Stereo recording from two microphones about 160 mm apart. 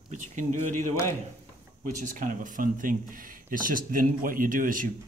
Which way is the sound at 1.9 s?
55° right (ahead or behind).